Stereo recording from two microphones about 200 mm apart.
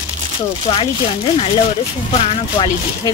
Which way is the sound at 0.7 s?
30° left (ahead or behind).